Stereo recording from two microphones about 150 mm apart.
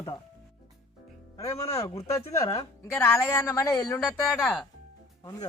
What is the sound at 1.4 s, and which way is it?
Speech, 20° left (ahead or behind).